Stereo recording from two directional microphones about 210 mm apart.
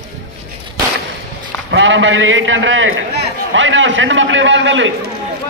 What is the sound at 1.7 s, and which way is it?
A man's voice, 65° right (ahead or behind).